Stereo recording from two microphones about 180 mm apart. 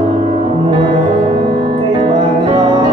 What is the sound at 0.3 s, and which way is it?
Music, 30° right (ahead or behind).